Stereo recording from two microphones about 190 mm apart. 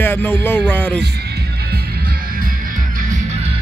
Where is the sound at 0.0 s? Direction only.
10° left (ahead or behind).